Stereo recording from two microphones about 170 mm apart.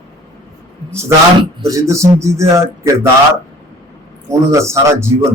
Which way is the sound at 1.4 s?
20° right (ahead or behind).